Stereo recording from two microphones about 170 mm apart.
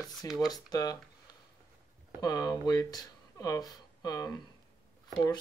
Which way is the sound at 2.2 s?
20° left (ahead or behind).